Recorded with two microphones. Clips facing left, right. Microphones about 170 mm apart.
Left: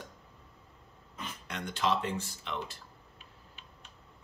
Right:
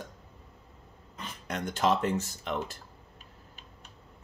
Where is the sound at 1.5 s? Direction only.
45° right (ahead or behind).